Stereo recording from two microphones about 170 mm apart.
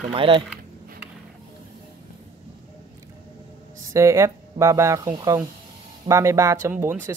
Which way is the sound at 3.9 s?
15° right (ahead or behind).